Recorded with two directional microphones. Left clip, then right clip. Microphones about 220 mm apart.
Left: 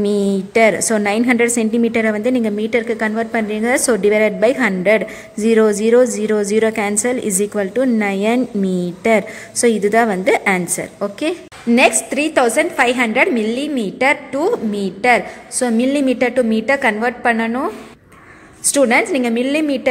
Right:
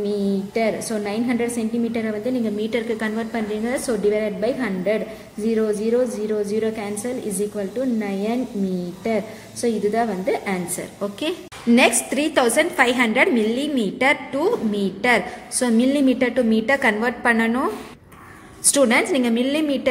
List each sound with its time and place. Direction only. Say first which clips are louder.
0.0 s a woman's voice: left 6 dB; 30° left (ahead or behind)
11.7 s a woman's voice: left 4 dB; 10° left (ahead or behind)
18.7 s a woman's voice: left 4 dB; 10° left (ahead or behind)